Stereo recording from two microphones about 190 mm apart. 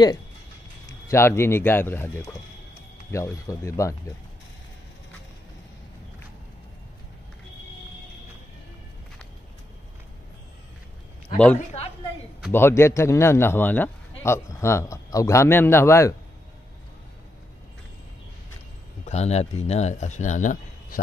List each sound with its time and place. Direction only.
1.0 s a man's voice: 15° left (ahead or behind)
11.5 s speech: 35° left (ahead or behind)
12.5 s a man's voice: 15° left (ahead or behind)
19.0 s speech: 35° left (ahead or behind)